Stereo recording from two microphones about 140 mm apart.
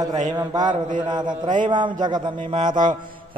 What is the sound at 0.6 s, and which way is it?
Mantra, 60° right (ahead or behind).